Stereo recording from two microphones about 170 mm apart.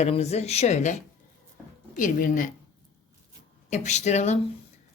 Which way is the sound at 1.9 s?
50° left (ahead or behind).